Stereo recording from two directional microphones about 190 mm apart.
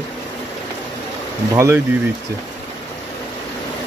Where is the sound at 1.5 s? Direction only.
15° right (ahead or behind).